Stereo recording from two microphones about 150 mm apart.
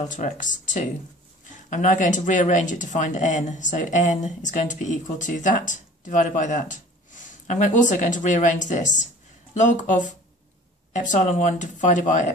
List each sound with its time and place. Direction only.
0.1 s speech: 55° left (ahead or behind)